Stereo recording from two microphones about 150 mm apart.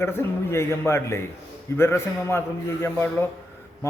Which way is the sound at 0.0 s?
15° left (ahead or behind).